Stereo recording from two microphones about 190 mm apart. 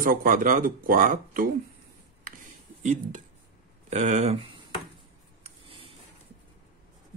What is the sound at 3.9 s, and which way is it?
Speech, 35° right (ahead or behind).